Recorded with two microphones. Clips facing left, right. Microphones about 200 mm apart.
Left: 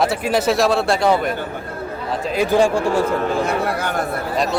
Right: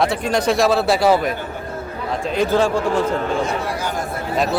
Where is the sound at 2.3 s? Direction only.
10° left (ahead or behind).